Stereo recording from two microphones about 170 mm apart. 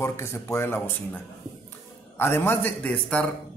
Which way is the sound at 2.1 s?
10° left (ahead or behind).